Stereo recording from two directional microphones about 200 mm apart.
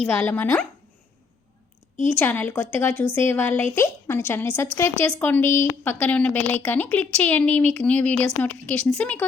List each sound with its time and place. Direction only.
0.0 s a woman's voice: 10° left (ahead or behind)
2.0 s a woman's voice: 10° left (ahead or behind)